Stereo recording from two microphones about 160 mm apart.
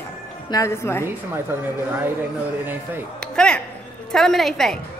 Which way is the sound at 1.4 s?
15° right (ahead or behind).